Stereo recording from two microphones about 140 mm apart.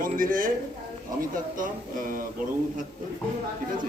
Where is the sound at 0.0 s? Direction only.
75° right (ahead or behind).